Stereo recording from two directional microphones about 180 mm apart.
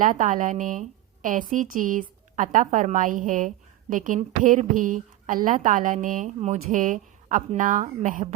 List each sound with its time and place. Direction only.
0.0 s a woman's voice: 45° right (ahead or behind)